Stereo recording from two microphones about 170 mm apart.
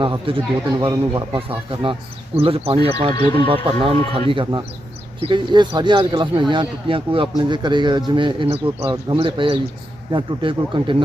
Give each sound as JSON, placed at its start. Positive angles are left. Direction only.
{"t": 0.0, "sound": "a man's voice", "side_deg": -30}
{"t": 3.2, "sound": "speech", "side_deg": 25}
{"t": 3.4, "sound": "a man's voice", "side_deg": -30}